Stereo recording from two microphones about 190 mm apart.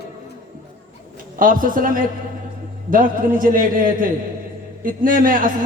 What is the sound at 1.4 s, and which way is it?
A man's voice, 45° right (ahead or behind).